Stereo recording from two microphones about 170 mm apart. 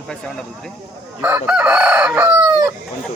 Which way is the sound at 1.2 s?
10° right (ahead or behind).